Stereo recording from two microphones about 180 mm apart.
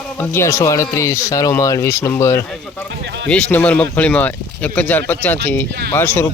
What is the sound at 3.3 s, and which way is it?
A man's voice, 5° left (ahead or behind).